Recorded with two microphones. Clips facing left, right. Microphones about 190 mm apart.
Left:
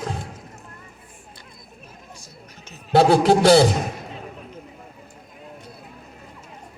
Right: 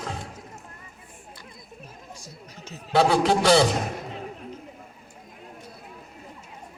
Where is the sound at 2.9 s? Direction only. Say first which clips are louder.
Left 5 dB; 40° left (ahead or behind).